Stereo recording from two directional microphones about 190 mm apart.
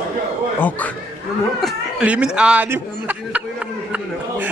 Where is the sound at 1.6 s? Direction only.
5° right (ahead or behind).